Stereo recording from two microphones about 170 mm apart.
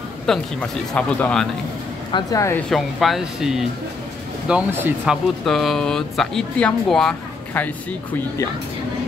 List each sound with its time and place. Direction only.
0.3 s speech: 10° left (ahead or behind)
2.1 s speech: 20° left (ahead or behind)
2.7 s speech: centre (ahead or behind)